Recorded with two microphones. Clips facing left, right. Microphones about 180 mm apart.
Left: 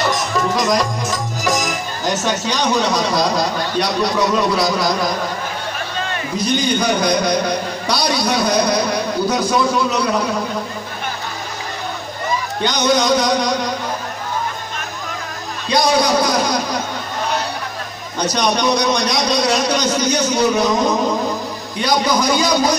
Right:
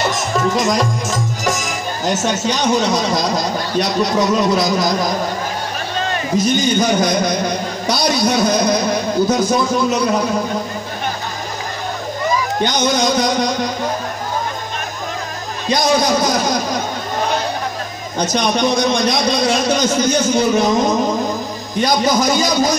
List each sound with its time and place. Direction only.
0.1 s music: 45° right (ahead or behind)
2.2 s a man's voice: 45° right (ahead or behind)
6.3 s a man's voice: 45° right (ahead or behind)
12.6 s a man's voice: 45° right (ahead or behind)
15.7 s a man's voice: 45° right (ahead or behind)
18.1 s a man's voice: 50° right (ahead or behind)